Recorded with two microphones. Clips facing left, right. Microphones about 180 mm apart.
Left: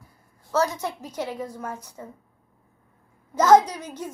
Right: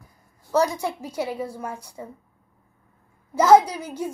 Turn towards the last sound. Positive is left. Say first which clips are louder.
# right 2 dB
turn(degrees=-10)  # may be behind; listen again after turning